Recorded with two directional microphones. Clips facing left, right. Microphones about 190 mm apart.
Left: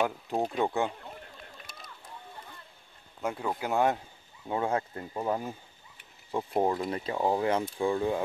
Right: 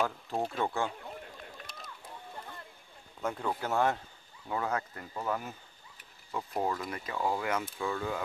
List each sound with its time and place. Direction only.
0.0 s speech: 20° left (ahead or behind)
3.2 s speech: 10° left (ahead or behind); by 8.2 s 30° left (ahead or behind)